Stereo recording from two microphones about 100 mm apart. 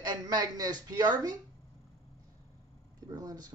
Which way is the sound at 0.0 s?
45° right (ahead or behind).